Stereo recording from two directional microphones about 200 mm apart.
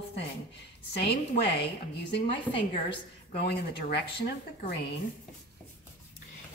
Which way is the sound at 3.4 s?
55° left (ahead or behind).